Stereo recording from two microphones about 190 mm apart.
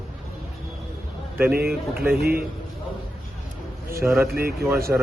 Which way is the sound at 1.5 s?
55° right (ahead or behind).